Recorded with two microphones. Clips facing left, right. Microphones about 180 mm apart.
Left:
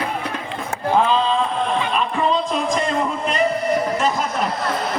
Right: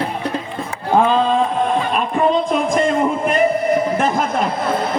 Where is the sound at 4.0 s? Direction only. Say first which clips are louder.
Right 3 dB; 55° right (ahead or behind).